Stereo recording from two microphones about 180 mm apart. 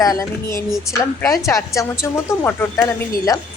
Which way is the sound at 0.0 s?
20° left (ahead or behind).